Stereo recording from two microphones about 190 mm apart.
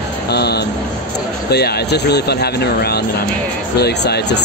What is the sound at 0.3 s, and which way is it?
Speech, 60° left (ahead or behind).